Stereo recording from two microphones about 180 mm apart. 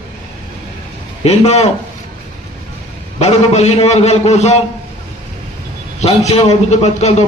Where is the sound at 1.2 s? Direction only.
35° left (ahead or behind).